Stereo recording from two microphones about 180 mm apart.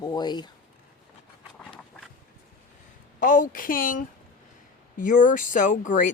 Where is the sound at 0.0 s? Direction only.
25° left (ahead or behind).